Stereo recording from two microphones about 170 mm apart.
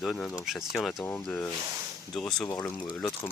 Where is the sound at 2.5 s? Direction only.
15° left (ahead or behind).